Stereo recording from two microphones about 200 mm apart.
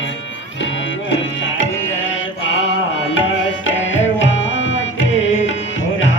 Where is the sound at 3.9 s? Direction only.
70° left (ahead or behind).